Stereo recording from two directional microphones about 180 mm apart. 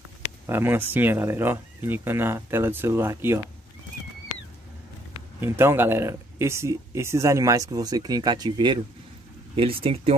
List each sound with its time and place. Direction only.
0.5 s speech: 10° right (ahead or behind)
5.4 s speech: 15° right (ahead or behind); by 10.1 s 30° right (ahead or behind)